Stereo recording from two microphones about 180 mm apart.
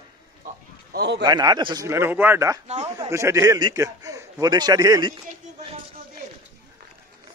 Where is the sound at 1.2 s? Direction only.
20° right (ahead or behind).